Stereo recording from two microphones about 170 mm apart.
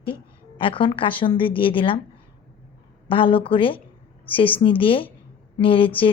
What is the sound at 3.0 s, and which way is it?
A woman's voice, 30° left (ahead or behind).